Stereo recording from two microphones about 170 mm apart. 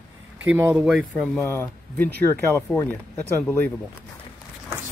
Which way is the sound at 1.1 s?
10° left (ahead or behind).